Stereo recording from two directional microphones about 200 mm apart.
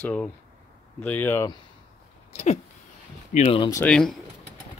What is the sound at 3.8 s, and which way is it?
Speech, 5° left (ahead or behind).